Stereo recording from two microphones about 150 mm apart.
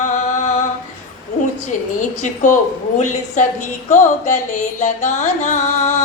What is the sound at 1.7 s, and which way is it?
A woman's voice, 60° left (ahead or behind).